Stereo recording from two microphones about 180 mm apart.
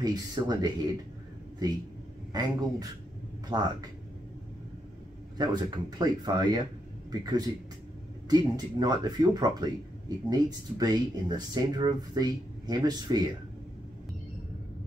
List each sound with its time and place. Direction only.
0.0 s speech: 20° right (ahead or behind)
3.5 s speech: 20° right (ahead or behind)
5.4 s speech: 25° right (ahead or behind)